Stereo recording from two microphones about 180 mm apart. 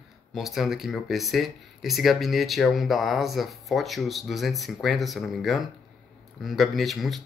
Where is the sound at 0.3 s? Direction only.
Centre (ahead or behind).